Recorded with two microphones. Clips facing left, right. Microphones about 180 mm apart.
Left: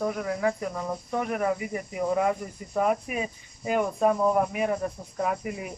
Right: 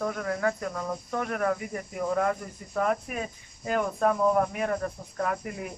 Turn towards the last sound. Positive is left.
turn(degrees=5)  # may be behind; listen again after turning